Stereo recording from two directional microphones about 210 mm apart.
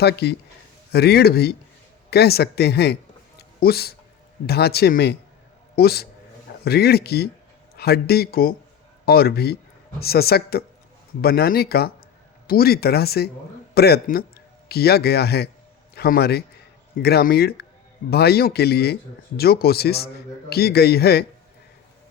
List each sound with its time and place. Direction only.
0.0 s a man's voice: 50° left (ahead or behind)